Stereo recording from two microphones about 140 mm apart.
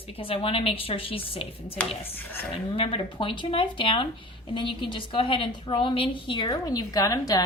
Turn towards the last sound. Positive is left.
turn(degrees=25)  # may be behind; listen again after turning